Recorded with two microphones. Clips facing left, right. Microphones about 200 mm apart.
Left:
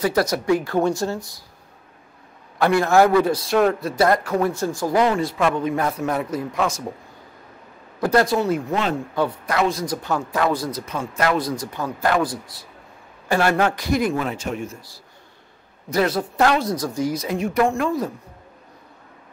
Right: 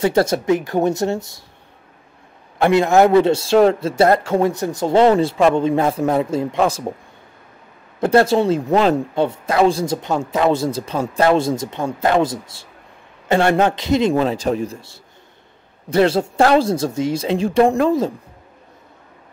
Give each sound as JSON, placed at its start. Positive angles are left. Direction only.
{"t": 0.0, "sound": "speech", "side_deg": -25}
{"t": 2.6, "sound": "speech", "side_deg": -20}
{"t": 8.0, "sound": "speech", "side_deg": -30}
{"t": 9.1, "sound": "speech", "side_deg": -25}